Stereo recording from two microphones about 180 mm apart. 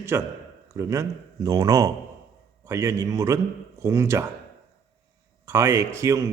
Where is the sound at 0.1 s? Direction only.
15° right (ahead or behind).